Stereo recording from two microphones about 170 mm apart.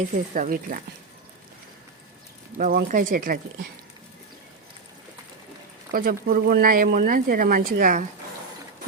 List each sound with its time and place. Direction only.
0.3 s speech: 50° right (ahead or behind)
2.6 s speech: 55° right (ahead or behind)
5.9 s speech: 60° right (ahead or behind)